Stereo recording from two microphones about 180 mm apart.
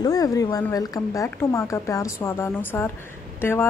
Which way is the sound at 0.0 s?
20° left (ahead or behind).